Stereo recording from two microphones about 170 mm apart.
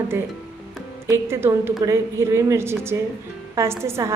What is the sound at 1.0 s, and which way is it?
A woman's voice, 15° right (ahead or behind).